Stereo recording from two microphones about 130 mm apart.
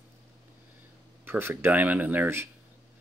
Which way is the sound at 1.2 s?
15° right (ahead or behind).